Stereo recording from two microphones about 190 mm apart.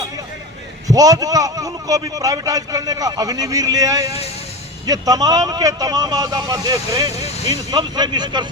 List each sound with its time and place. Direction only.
0.9 s a man's voice: 20° right (ahead or behind)
7.2 s vehicle: 35° left (ahead or behind)
7.7 s a man's voice: 20° right (ahead or behind)